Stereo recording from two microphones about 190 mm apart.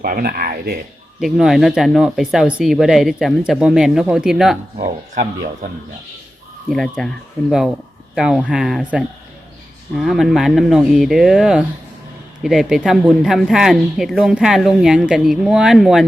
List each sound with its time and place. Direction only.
0.0 s speech: 50° right (ahead or behind)
1.2 s speech: centre (ahead or behind)
6.7 s speech: centre (ahead or behind)
8.1 s speech: 5° right (ahead or behind)